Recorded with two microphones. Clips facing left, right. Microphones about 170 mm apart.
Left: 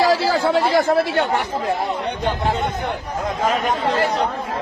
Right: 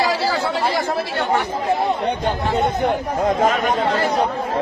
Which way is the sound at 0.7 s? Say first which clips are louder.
Left 5 dB; 55° left (ahead or behind).